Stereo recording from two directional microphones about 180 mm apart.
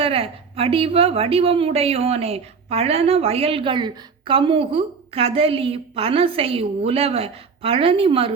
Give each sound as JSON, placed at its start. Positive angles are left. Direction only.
{"t": 0.0, "sound": "a woman's voice", "side_deg": -30}